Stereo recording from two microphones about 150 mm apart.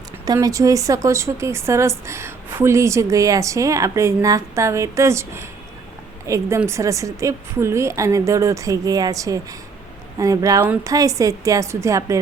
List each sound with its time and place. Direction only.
0.3 s speech: 25° right (ahead or behind)